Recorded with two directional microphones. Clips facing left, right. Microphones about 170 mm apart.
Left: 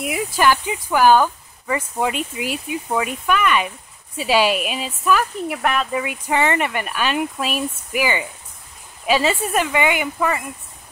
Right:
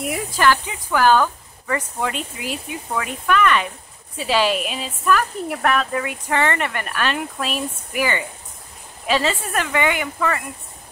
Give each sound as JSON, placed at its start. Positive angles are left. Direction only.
{"t": 0.0, "sound": "speech", "side_deg": 10}